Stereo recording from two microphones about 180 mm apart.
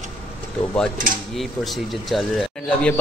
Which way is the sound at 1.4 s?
Centre (ahead or behind).